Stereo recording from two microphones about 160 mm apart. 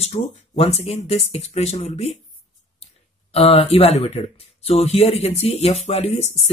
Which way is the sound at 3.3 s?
40° left (ahead or behind).